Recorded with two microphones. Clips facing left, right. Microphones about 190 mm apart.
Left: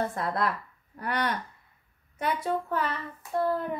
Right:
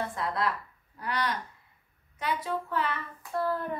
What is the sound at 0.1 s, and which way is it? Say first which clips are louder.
A woman's voice: left 2 dB; 50° left (ahead or behind).